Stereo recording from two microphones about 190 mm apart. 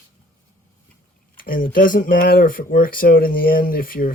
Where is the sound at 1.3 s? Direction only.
50° left (ahead or behind).